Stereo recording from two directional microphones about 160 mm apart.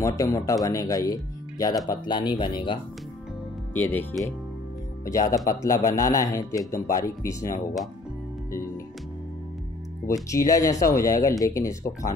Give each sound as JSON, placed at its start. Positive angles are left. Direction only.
{"t": 0.0, "sound": "speech", "side_deg": 20}
{"t": 3.7, "sound": "speech", "side_deg": 10}
{"t": 8.5, "sound": "speech", "side_deg": 15}
{"t": 10.0, "sound": "speech", "side_deg": 20}